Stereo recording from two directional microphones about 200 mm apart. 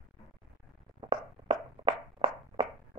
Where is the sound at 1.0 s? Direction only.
25° right (ahead or behind).